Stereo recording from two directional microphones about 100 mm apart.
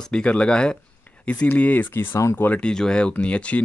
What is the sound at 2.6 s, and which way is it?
Speech, 10° left (ahead or behind).